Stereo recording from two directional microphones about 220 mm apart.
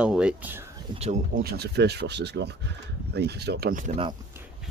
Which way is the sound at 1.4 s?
45° right (ahead or behind).